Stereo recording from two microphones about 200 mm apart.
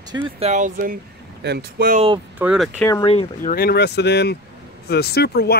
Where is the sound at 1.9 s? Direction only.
30° right (ahead or behind).